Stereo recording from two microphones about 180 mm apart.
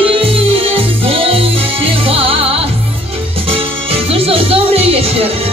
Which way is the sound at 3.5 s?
30° right (ahead or behind).